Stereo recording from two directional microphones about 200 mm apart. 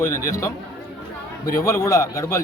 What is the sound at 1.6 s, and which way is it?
Speech, 15° left (ahead or behind).